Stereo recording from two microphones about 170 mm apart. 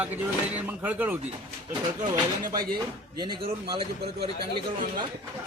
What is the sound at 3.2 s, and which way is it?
Speech, 30° right (ahead or behind).